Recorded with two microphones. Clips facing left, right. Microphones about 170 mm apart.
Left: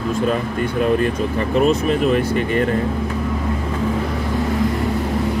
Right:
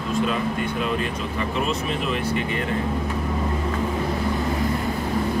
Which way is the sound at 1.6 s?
50° left (ahead or behind).